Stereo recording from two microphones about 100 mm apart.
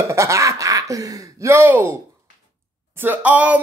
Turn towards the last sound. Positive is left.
turn(degrees=-15)  # may be behind; listen again after turning